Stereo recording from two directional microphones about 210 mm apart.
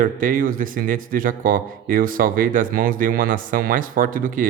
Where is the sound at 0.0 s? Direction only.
40° right (ahead or behind).